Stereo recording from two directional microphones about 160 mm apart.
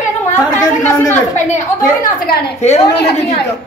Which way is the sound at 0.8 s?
10° left (ahead or behind).